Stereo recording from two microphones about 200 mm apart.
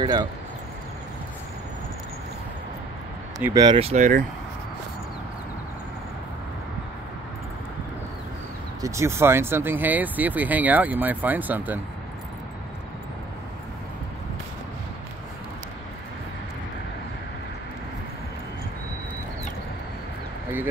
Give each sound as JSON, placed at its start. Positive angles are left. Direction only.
{"t": 0.0, "sound": "speech", "side_deg": -20}
{"t": 3.3, "sound": "speech", "side_deg": -15}
{"t": 8.8, "sound": "speech", "side_deg": -15}